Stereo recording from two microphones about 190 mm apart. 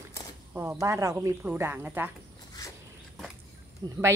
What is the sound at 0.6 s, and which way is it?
Speech, 15° right (ahead or behind).